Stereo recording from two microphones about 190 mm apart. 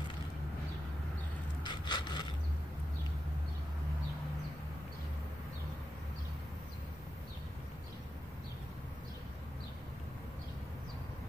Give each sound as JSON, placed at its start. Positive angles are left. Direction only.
{"t": 1.6, "sound": "wood", "side_deg": 25}